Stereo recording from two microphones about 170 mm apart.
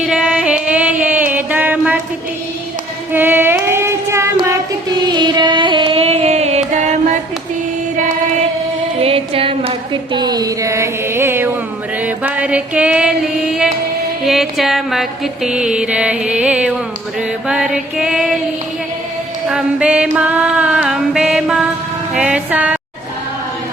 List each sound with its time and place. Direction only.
0.0 s music: 5° right (ahead or behind)
3.1 s female singing: 10° right (ahead or behind)
4.4 s music: 20° right (ahead or behind); by 7.2 s 45° right (ahead or behind)
9.0 s a sound: 35° right (ahead or behind); by 11.5 s 15° right (ahead or behind)
12.0 s music: 10° right (ahead or behind)
14.3 s mantra: centre (ahead or behind)
19.5 s mantra: 5° right (ahead or behind)
22.1 s music: 5° right (ahead or behind)